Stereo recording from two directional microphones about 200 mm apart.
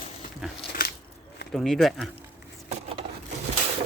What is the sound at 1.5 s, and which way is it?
Speech, centre (ahead or behind).